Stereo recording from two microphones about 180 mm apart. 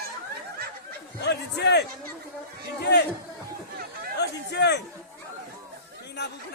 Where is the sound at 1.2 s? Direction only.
70° left (ahead or behind).